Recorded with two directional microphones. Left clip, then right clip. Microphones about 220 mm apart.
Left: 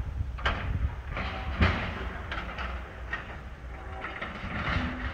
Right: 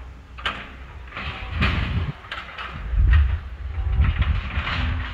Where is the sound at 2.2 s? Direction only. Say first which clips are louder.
Right 5 dB; 45° left (ahead or behind).